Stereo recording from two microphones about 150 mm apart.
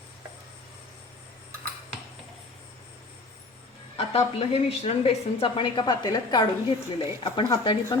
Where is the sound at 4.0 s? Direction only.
40° left (ahead or behind).